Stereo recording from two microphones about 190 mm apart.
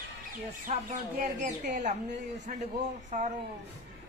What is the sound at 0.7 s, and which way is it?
Speech, 40° right (ahead or behind).